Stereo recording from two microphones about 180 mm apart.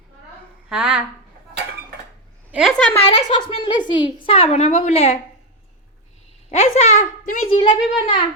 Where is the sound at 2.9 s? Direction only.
35° left (ahead or behind).